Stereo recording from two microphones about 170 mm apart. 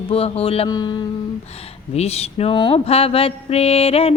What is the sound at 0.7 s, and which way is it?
Mantra, 25° left (ahead or behind).